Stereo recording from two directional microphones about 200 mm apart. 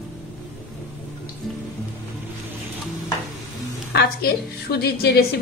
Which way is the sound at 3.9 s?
50° left (ahead or behind).